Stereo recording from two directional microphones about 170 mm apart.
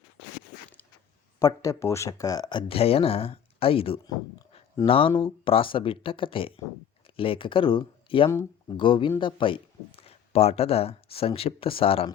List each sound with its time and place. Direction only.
1.4 s speech: 20° left (ahead or behind)